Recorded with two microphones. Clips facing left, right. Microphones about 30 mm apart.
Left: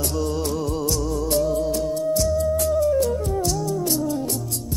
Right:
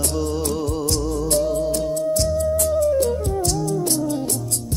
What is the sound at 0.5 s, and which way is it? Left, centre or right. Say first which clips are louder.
Music: right 1 dB; right.